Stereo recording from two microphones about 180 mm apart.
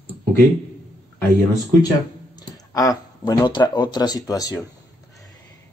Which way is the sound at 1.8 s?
20° left (ahead or behind).